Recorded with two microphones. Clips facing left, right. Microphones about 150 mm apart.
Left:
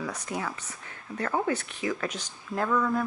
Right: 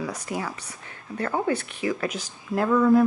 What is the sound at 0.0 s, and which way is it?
Speech, 10° right (ahead or behind).